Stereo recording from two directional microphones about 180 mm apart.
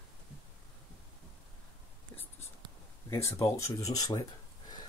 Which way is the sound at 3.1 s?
15° left (ahead or behind).